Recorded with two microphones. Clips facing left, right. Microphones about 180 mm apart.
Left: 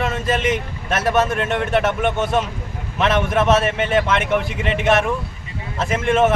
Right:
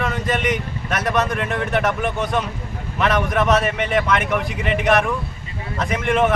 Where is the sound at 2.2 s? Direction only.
5° left (ahead or behind).